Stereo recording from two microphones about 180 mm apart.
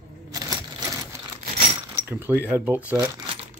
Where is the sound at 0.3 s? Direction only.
20° right (ahead or behind).